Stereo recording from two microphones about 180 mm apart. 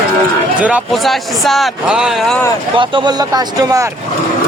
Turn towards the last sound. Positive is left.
turn(degrees=-20)  # may be behind; listen again after turning